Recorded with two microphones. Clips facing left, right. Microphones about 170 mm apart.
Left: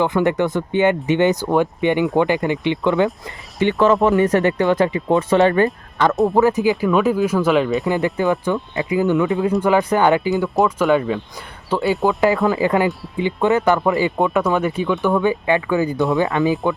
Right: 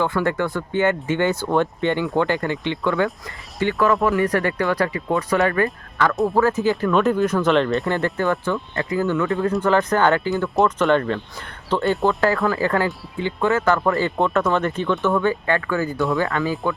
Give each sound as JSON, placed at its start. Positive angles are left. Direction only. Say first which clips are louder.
{"t": 0.0, "sound": "speech", "louder": "left 4 dB", "side_deg": 20}
{"t": 8.0, "sound": "speech", "louder": "left 3 dB", "side_deg": 20}
{"t": 10.5, "sound": "speech", "louder": "even", "side_deg": 0}
{"t": 12.2, "sound": "speech", "louder": "left 3 dB", "side_deg": 20}